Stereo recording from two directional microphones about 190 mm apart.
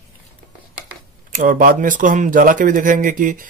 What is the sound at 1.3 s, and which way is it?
Speech, 45° right (ahead or behind).